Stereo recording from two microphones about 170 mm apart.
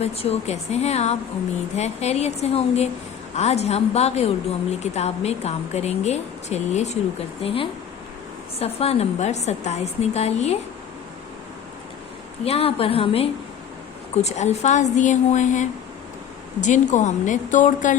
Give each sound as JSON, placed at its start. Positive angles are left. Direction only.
{"t": 0.0, "sound": "speech", "side_deg": 35}
{"t": 12.5, "sound": "a woman's voice", "side_deg": 35}